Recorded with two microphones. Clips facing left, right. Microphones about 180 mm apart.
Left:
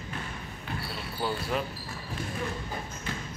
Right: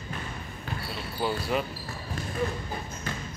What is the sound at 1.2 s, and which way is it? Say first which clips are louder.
Speech: right 2 dB; 5° right (ahead or behind).